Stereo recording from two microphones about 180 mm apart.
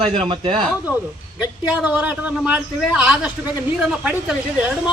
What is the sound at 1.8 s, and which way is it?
A man's voice, 10° right (ahead or behind).